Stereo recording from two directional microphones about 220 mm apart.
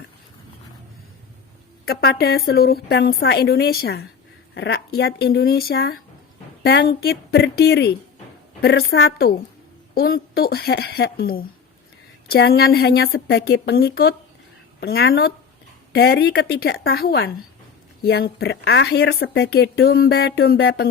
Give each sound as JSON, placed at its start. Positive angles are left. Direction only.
{"t": 1.8, "sound": "a woman's voice", "side_deg": 45}